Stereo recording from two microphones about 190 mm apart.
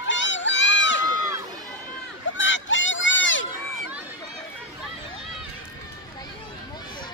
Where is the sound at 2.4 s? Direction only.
80° left.